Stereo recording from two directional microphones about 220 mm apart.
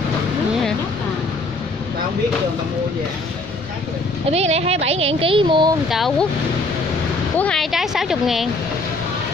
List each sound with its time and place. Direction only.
4.3 s speech: 30° right (ahead or behind)
5.9 s speech: centre (ahead or behind)
7.3 s speech: 5° left (ahead or behind)